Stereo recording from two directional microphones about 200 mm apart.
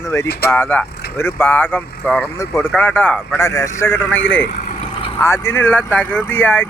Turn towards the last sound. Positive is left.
turn(degrees=10)  # may be behind; listen again after turning